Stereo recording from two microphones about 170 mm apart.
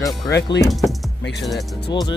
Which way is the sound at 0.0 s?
20° left (ahead or behind).